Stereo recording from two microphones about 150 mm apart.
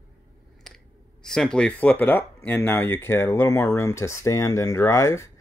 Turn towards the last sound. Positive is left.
turn(degrees=20)  # may be behind; listen again after turning